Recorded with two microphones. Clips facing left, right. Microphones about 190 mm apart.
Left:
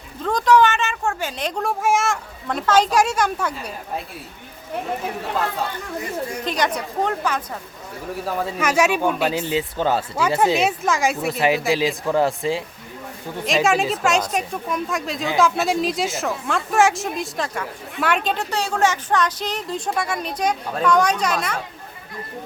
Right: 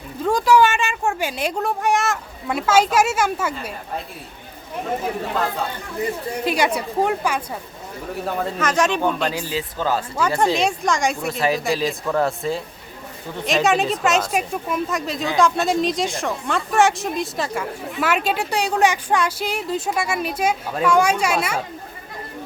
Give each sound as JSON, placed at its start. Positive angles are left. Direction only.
{"t": 0.2, "sound": "speech", "side_deg": -10}
{"t": 6.4, "sound": "speech", "side_deg": -10}
{"t": 8.2, "sound": "speech", "side_deg": 5}
{"t": 9.3, "sound": "speech", "side_deg": 25}
{"t": 10.2, "sound": "speech", "side_deg": 5}
{"t": 11.3, "sound": "speech", "side_deg": 15}
{"t": 11.6, "sound": "speech", "side_deg": 0}
{"t": 11.9, "sound": "speech", "side_deg": 15}
{"t": 13.4, "sound": "speech", "side_deg": 0}